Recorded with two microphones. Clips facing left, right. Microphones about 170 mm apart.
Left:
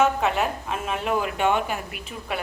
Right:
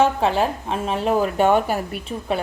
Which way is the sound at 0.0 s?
30° right (ahead or behind).